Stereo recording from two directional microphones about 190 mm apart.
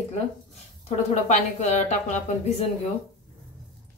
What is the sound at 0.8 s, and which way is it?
A woman's voice, 40° left (ahead or behind).